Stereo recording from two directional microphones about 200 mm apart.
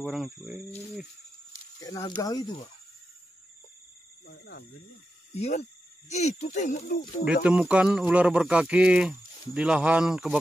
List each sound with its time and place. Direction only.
0.0 s speech: centre (ahead or behind)
1.8 s speech: 20° left (ahead or behind)
4.3 s speech: 55° left (ahead or behind)
5.3 s speech: 30° left (ahead or behind)
7.4 s speech: 5° right (ahead or behind)